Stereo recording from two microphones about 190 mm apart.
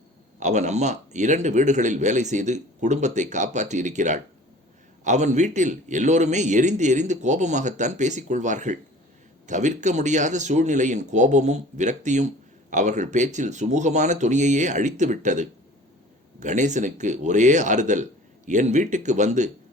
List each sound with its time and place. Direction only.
0.3 s a man's voice: 40° right (ahead or behind)